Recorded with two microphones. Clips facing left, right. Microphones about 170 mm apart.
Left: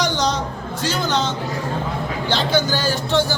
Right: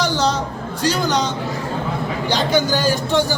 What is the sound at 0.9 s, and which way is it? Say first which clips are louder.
Speech: left 1 dB; 10° right (ahead or behind).